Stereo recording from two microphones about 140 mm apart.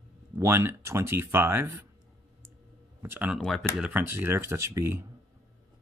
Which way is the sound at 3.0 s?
15° right (ahead or behind).